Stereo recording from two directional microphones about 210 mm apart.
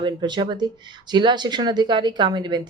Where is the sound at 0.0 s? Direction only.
20° right (ahead or behind).